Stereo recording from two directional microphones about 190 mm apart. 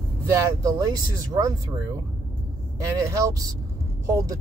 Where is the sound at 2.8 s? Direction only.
15° right (ahead or behind).